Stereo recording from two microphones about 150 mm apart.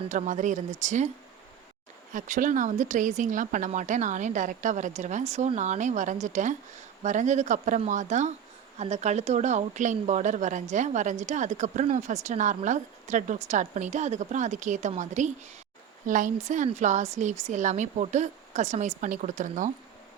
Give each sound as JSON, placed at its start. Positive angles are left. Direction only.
{"t": 0.1, "sound": "speech", "side_deg": -55}
{"t": 2.1, "sound": "speech", "side_deg": -60}